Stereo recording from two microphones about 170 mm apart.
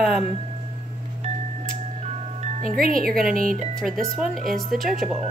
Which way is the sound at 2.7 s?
55° right (ahead or behind).